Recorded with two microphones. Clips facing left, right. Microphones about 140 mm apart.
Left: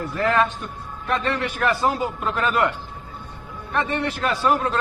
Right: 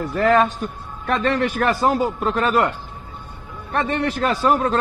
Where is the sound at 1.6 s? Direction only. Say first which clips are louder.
Right 1 dB; 45° right (ahead or behind).